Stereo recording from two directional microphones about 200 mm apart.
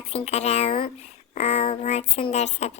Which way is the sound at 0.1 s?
35° left (ahead or behind).